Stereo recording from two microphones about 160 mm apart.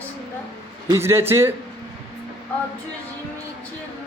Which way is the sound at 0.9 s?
15° right (ahead or behind).